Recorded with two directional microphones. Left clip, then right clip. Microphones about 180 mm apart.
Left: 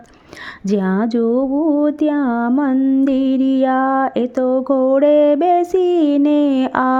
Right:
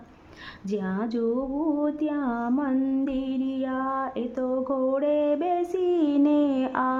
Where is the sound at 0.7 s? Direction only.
45° left (ahead or behind).